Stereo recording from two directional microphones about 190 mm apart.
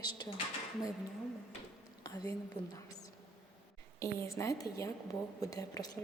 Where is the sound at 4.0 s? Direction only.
15° left (ahead or behind).